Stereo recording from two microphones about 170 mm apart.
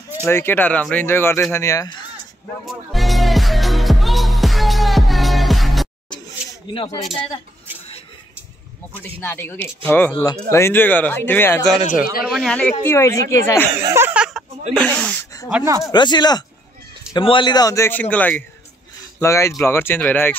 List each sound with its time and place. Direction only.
0.2 s speech: 15° left (ahead or behind)
2.6 s music: centre (ahead or behind)
6.7 s speech: 30° left (ahead or behind)
9.0 s speech: 10° left (ahead or behind)
12.3 s speech: centre (ahead or behind)
12.8 s speech: 15° left (ahead or behind)
13.8 s a sound: 15° right (ahead or behind)
14.7 s speech: 5° left (ahead or behind)
15.5 s speech: 15° right (ahead or behind)
15.8 s speech: 25° left (ahead or behind)